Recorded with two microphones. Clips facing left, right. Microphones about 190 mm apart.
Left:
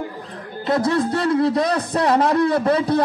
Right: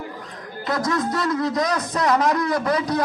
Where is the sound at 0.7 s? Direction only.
30° left (ahead or behind).